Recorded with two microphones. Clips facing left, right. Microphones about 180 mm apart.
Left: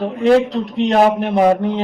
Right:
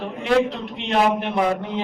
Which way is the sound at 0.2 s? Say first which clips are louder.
Left 6 dB; 40° left (ahead or behind).